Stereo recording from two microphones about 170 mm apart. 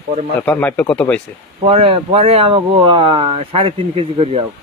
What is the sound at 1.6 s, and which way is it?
Speech, 35° right (ahead or behind).